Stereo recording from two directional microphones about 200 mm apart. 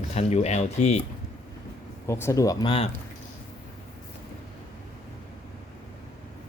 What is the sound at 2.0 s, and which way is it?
Speech, 15° left (ahead or behind).